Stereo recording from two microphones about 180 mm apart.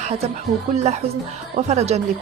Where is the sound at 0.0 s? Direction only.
35° right (ahead or behind).